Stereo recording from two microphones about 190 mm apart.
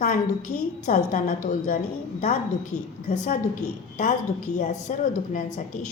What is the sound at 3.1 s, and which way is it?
A woman's voice, 40° left (ahead or behind).